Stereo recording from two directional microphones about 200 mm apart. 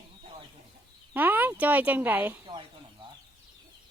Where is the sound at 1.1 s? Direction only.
10° right (ahead or behind).